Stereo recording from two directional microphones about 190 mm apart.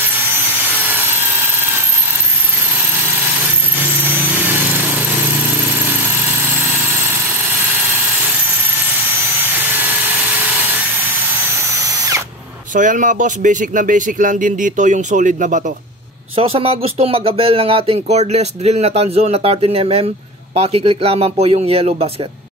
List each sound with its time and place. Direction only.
4.0 s a sound: 10° right (ahead or behind)
9.4 s helicopter: 10° right (ahead or behind)
12.7 s speech: 45° right (ahead or behind)
16.3 s speech: 30° right (ahead or behind)